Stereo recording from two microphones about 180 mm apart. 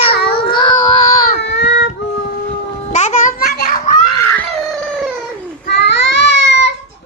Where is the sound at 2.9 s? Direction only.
40° left (ahead or behind).